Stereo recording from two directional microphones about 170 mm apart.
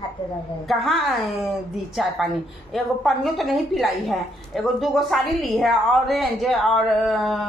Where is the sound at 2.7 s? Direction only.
Centre (ahead or behind).